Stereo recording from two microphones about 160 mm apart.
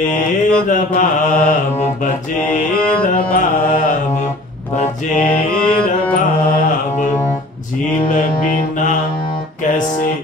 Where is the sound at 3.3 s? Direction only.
55° left (ahead or behind).